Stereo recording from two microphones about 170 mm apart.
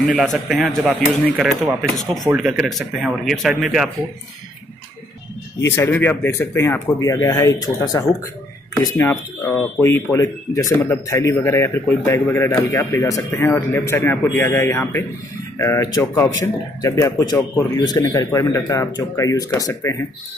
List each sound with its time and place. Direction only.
0.0 s speech: centre (ahead or behind)
5.6 s speech: 15° left (ahead or behind)